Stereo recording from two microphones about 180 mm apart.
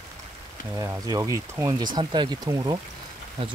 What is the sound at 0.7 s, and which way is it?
Speech, 20° right (ahead or behind).